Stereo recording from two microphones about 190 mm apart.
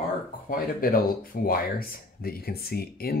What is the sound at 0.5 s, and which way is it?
Speech, 50° left (ahead or behind).